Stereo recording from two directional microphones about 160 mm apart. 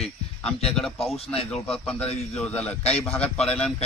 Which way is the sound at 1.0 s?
40° left (ahead or behind).